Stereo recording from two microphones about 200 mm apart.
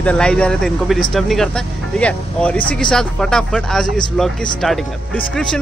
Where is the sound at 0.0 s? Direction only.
5° left (ahead or behind).